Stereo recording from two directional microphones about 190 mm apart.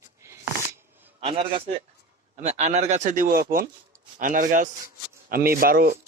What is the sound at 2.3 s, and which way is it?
A man's voice, 35° right (ahead or behind).